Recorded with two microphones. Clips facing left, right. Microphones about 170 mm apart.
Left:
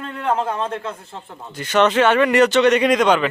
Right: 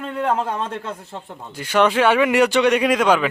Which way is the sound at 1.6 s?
10° right (ahead or behind).